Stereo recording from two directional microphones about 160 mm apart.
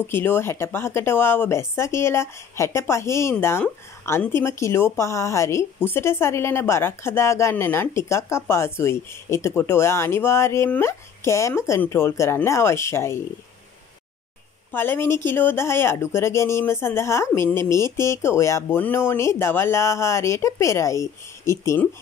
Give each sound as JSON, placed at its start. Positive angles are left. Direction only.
{"t": 0.0, "sound": "speech", "side_deg": 15}
{"t": 14.7, "sound": "speech", "side_deg": 15}